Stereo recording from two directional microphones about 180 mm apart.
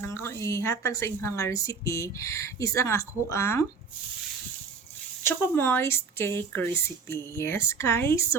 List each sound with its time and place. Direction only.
0.0 s a woman's voice: 15° left (ahead or behind)
5.2 s a woman's voice: 15° left (ahead or behind)